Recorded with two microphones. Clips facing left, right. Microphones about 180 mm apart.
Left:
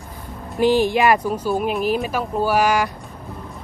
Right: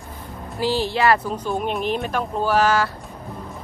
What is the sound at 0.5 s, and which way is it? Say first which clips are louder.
Speech: left 5 dB; 20° left (ahead or behind).